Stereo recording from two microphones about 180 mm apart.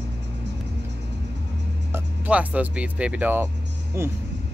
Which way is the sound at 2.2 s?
10° right (ahead or behind).